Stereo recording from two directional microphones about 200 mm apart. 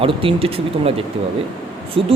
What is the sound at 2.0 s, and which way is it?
Speech, 25° right (ahead or behind).